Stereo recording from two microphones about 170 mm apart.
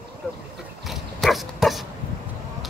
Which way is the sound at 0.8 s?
Centre (ahead or behind).